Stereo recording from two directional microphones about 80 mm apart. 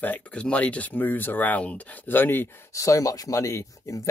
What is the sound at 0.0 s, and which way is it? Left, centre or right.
Speech, centre.